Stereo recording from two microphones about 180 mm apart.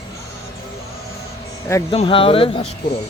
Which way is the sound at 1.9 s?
30° left (ahead or behind).